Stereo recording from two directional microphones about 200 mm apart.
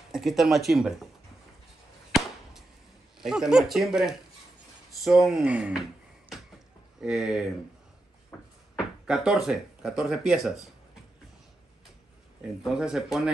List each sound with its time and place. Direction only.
0.1 s speech: centre (ahead or behind)
3.2 s speech: centre (ahead or behind)
7.0 s speech: 5° right (ahead or behind)
8.3 s a sound: 10° left (ahead or behind)
8.7 s speech: 5° right (ahead or behind)
12.6 s speech: 5° right (ahead or behind)